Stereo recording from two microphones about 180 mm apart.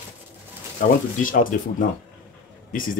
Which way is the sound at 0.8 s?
50° left (ahead or behind).